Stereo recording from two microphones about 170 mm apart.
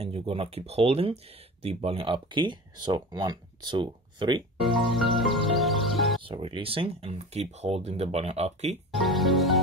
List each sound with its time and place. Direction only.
0.0 s speech: 35° right (ahead or behind)
4.6 s speech: centre (ahead or behind)
5.6 s music: centre (ahead or behind)
6.2 s speech: 30° right (ahead or behind)
8.9 s music: centre (ahead or behind)